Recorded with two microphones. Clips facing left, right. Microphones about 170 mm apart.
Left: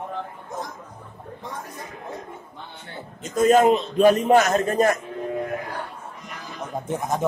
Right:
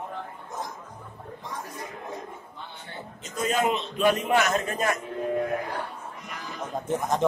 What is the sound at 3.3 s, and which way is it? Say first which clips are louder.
A man's voice: left 9 dB; 45° left (ahead or behind).